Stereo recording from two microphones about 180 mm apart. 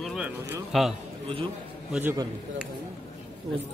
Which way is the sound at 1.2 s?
30° right (ahead or behind).